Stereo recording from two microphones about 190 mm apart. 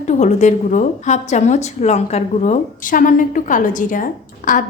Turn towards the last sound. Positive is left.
turn(degrees=45)  # may be behind; listen again after turning